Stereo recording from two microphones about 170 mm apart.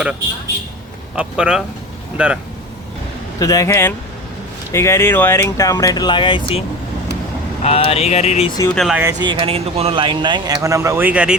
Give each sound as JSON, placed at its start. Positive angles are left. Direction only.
{"t": 1.1, "sound": "speech", "side_deg": -5}
{"t": 3.4, "sound": "speech", "side_deg": 20}
{"t": 7.6, "sound": "speech", "side_deg": 35}
{"t": 8.7, "sound": "speech", "side_deg": 0}
{"t": 9.0, "sound": "speech", "side_deg": -20}